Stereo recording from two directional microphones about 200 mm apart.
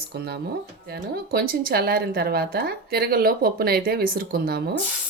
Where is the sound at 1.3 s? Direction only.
50° right (ahead or behind).